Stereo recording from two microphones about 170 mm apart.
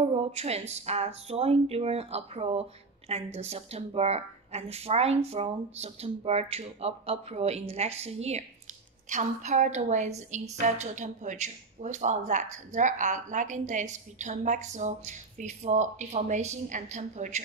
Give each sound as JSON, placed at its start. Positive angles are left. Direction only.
{"t": 0.0, "sound": "a woman's voice", "side_deg": -40}